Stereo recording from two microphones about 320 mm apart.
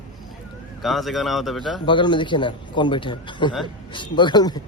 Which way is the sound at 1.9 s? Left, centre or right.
Centre.